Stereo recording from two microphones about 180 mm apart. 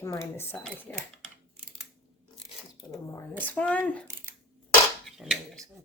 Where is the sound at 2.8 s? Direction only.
20° left (ahead or behind).